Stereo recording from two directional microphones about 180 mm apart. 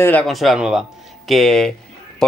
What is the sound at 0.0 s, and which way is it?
Speech, 10° left (ahead or behind).